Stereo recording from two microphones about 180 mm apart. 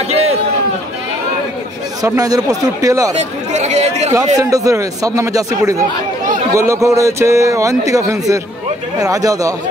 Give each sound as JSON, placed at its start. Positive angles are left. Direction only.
{"t": 2.0, "sound": "speech", "side_deg": -20}
{"t": 3.2, "sound": "speech", "side_deg": -40}
{"t": 4.4, "sound": "a man's voice", "side_deg": -20}